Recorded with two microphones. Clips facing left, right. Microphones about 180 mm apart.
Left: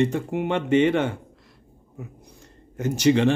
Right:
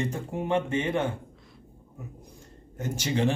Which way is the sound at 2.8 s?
80° left.